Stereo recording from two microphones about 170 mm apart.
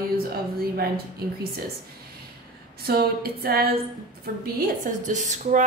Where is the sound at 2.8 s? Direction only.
65° right (ahead or behind).